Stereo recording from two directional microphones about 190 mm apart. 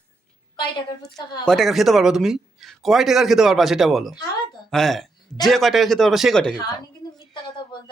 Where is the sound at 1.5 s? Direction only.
Centre (ahead or behind).